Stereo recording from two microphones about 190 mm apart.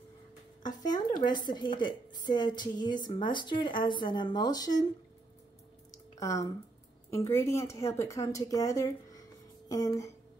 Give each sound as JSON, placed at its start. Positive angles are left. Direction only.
{"t": 0.6, "sound": "a woman's voice", "side_deg": 20}
{"t": 6.1, "sound": "a woman's voice", "side_deg": 15}